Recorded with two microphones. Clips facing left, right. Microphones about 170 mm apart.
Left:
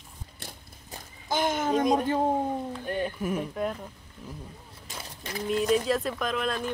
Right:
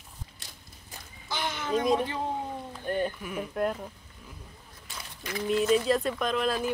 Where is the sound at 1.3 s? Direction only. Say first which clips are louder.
Left 4 dB; 50° left (ahead or behind).